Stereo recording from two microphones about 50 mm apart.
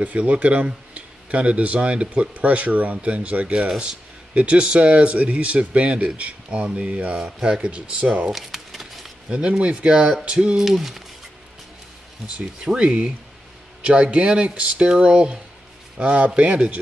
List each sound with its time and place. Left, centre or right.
0.0 s speech: right
8.3 s a sound: centre
9.3 s speech: right
10.6 s speech: centre
12.7 s speech: centre